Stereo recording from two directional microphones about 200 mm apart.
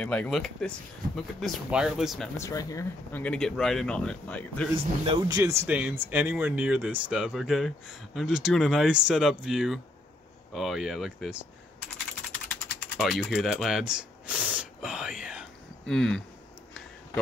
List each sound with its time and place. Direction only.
0.0 s speech: 5° left (ahead or behind)
2.3 s speech: 15° left (ahead or behind)
5.0 s speech: 25° right (ahead or behind)
5.4 s speech: 15° right (ahead or behind)
12.4 s typing: centre (ahead or behind)
15.9 s speech: 5° left (ahead or behind)